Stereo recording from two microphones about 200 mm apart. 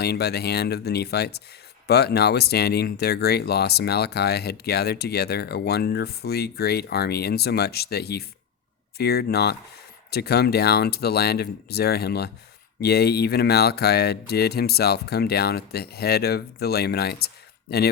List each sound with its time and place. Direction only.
0.0 s speech: 55° left (ahead or behind)